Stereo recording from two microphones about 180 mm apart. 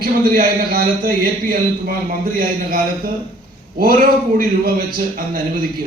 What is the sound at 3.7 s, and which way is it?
A man's voice, 55° right (ahead or behind).